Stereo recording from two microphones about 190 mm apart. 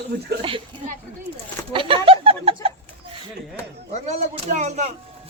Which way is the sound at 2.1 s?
30° right (ahead or behind).